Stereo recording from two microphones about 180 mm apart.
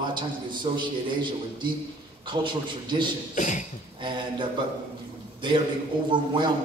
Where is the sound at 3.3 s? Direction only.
45° left (ahead or behind).